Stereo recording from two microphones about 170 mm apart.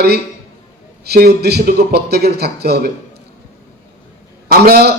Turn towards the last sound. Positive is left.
turn(degrees=-65)  # may be behind; listen again after turning